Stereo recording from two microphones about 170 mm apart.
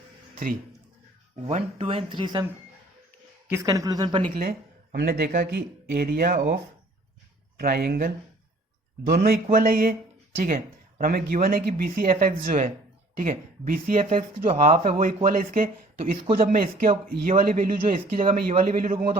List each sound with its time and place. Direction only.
1.5 s speech: 35° right (ahead or behind)
3.5 s speech: 20° right (ahead or behind)
4.2 s speech: 50° right (ahead or behind)
7.6 s speech: 60° right (ahead or behind)
14.0 s speech: 40° right (ahead or behind)